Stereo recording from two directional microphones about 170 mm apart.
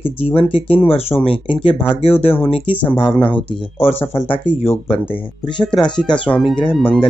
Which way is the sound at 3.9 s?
10° left (ahead or behind).